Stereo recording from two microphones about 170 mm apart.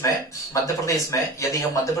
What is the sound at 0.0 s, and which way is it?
Speech, 20° left (ahead or behind).